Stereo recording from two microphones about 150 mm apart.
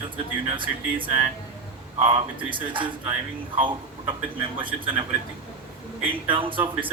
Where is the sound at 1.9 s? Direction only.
35° right (ahead or behind).